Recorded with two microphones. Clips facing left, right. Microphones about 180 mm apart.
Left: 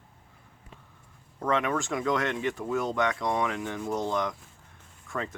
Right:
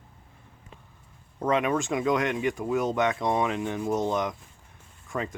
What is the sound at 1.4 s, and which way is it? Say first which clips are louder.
Speech: right 3 dB; 20° right (ahead or behind).